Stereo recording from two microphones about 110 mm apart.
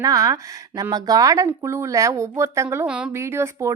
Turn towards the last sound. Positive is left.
turn(degrees=-25)  # may be behind; listen again after turning